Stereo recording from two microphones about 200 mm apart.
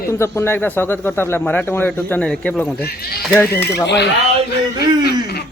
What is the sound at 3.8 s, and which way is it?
Speech, 60° left (ahead or behind).